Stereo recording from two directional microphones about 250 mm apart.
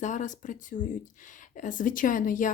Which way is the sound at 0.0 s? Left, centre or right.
Left.